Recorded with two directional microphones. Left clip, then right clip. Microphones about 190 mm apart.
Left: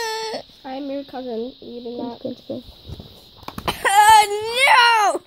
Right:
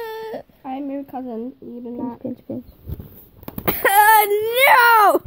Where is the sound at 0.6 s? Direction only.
30° right (ahead or behind).